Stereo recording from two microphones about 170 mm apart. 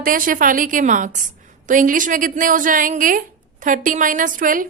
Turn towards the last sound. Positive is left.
turn(degrees=-55)  # may be behind; listen again after turning